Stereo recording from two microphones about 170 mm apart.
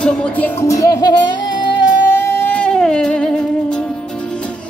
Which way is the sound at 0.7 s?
20° left (ahead or behind).